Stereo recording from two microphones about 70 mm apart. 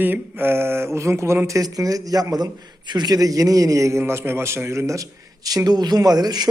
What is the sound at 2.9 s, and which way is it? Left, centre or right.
A man's voice, right.